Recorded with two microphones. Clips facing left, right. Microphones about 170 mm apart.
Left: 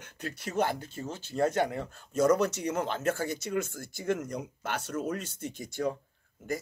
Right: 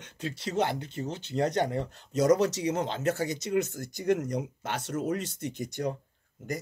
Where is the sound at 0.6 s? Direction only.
50° left (ahead or behind).